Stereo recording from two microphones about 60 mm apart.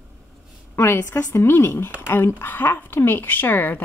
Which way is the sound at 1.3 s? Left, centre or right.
Left.